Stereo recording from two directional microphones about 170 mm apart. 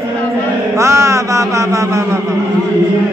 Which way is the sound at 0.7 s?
15° right (ahead or behind).